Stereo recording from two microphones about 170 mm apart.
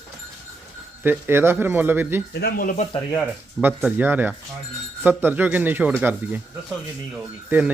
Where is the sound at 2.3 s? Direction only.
60° left (ahead or behind).